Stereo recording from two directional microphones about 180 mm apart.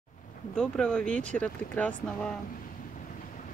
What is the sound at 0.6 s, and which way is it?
Speech, 5° left (ahead or behind).